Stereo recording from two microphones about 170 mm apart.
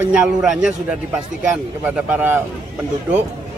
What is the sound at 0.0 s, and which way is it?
A man's voice, 5° right (ahead or behind).